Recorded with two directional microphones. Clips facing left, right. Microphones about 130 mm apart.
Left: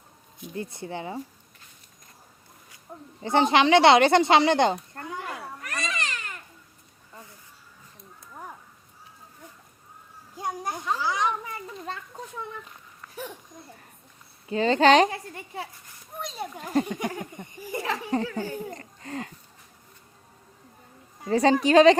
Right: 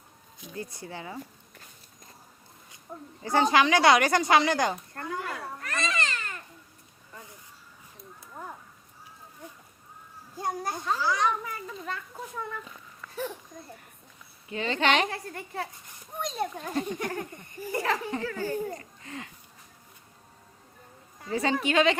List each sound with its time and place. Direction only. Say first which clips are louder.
0.5 s speech: left 5 dB; 25° left (ahead or behind)
2.9 s speech: right 1 dB; 10° left (ahead or behind)
3.2 s speech: left 3 dB; 25° left (ahead or behind)
5.5 s cat: right 3 dB; 15° left (ahead or behind)
10.3 s children playing: even; 15° left (ahead or behind)
14.4 s a woman's voice: left 7 dB; 35° left (ahead or behind)
15.1 s a child's voice: even; 15° left (ahead or behind)
17.0 s speech: left 1 dB; 15° left (ahead or behind)
18.8 s a sound: left 6 dB; 40° left (ahead or behind)
21.2 s a woman's voice: left 7 dB; 40° left (ahead or behind)